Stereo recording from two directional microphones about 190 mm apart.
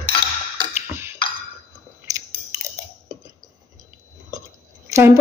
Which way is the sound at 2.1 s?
20° right (ahead or behind).